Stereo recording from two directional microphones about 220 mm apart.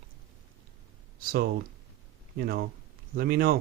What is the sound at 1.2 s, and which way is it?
Speech, 40° right (ahead or behind).